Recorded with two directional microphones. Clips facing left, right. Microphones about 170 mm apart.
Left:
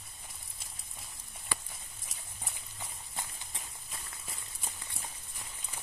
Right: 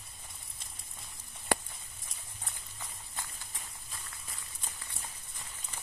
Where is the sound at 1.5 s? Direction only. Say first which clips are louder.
Right 10 dB; 75° right (ahead or behind).